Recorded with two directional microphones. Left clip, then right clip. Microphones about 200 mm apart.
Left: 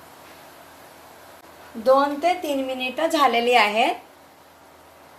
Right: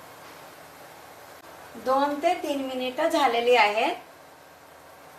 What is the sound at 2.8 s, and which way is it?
A woman's voice, 35° left (ahead or behind).